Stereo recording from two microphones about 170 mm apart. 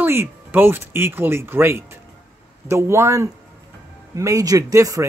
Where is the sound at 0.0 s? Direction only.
15° right (ahead or behind).